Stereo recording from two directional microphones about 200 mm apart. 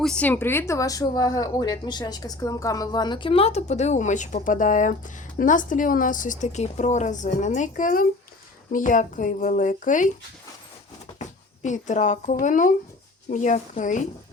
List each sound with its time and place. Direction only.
0.0 s speech: 5° left (ahead or behind); by 10.1 s 40° left (ahead or behind)
11.6 s speech: 35° left (ahead or behind)